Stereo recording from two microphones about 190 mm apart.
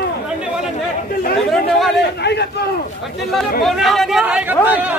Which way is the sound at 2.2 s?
60° left (ahead or behind).